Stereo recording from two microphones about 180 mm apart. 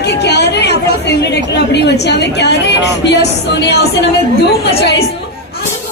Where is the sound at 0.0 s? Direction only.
70° left (ahead or behind).